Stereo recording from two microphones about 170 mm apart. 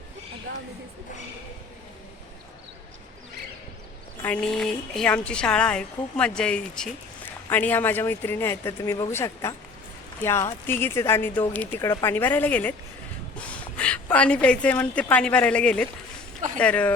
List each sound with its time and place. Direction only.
4.2 s a woman's voice: 5° left (ahead or behind)